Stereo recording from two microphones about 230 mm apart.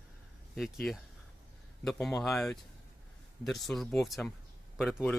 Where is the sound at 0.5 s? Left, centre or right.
Centre.